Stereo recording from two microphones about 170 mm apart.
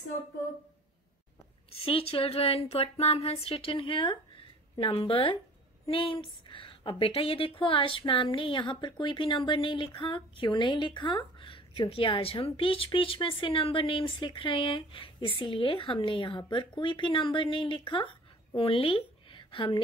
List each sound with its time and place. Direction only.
1.9 s a woman's voice: 35° left (ahead or behind)